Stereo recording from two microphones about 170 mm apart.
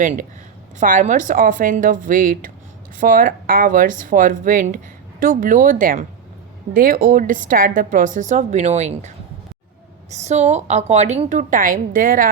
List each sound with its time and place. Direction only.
0.0 s a woman's voice: 50° right (ahead or behind)